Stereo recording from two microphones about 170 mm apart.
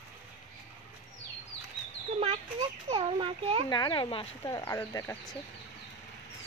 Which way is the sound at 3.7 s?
25° left (ahead or behind).